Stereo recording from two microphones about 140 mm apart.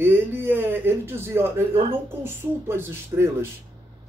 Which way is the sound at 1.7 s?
45° right (ahead or behind).